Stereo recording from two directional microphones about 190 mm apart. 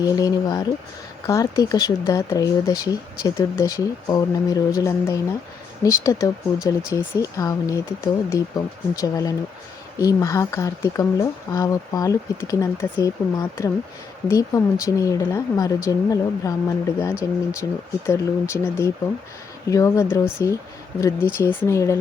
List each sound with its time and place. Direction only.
0.0 s speech: 20° left (ahead or behind)